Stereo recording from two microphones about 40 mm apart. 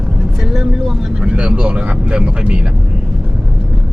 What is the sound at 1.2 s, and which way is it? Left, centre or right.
Speech, right.